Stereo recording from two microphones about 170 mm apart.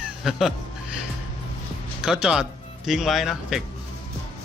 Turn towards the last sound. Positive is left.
turn(degrees=0)  # may be behind; listen again after turning